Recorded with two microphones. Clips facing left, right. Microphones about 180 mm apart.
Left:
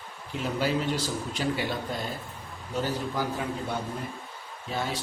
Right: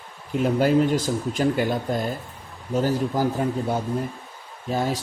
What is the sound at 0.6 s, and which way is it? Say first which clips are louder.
Speech: right 7 dB; 50° right (ahead or behind).